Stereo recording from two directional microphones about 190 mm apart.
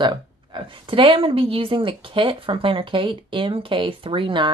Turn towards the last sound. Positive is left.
turn(degrees=-25)  # may be behind; listen again after turning